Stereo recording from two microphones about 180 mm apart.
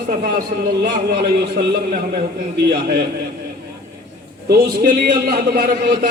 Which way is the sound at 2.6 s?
65° right (ahead or behind).